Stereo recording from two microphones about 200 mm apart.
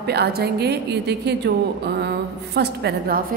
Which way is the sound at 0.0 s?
55° right (ahead or behind).